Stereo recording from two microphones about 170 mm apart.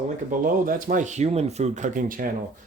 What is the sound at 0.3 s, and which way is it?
Speech, 55° right (ahead or behind).